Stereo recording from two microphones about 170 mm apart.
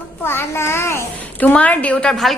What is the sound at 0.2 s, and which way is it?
A child's voice, 15° left (ahead or behind).